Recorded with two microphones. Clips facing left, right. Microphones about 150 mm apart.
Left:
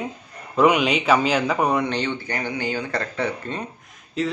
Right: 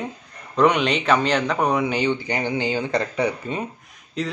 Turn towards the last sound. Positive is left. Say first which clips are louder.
# left 2 dB
turn(degrees=0)  # may be behind; listen again after turning